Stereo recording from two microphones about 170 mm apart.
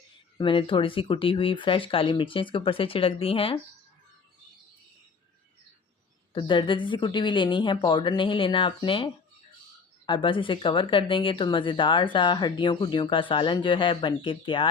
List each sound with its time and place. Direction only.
0.3 s speech: 30° left (ahead or behind)
6.3 s speech: 30° left (ahead or behind)